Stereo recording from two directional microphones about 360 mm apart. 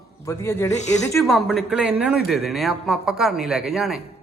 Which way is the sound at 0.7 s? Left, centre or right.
Centre.